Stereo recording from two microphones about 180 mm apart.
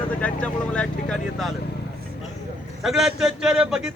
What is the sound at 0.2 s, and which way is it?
Vehicle, 5° left (ahead or behind).